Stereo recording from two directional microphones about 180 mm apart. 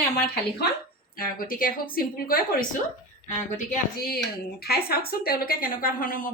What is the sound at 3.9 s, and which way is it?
Speech, 60° left (ahead or behind).